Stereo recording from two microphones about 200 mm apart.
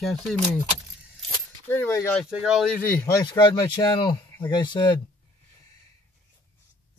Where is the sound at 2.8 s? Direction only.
10° left (ahead or behind).